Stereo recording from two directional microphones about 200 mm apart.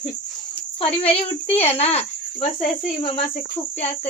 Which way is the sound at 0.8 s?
30° left (ahead or behind).